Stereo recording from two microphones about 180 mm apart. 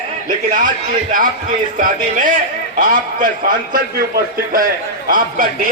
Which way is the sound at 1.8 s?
45° right (ahead or behind).